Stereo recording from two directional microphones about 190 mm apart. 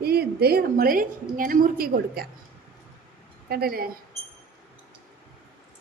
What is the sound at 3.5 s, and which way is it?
Speech, 50° right (ahead or behind).